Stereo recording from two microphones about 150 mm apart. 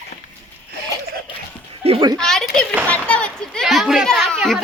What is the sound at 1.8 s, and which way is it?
Speech, 40° right (ahead or behind).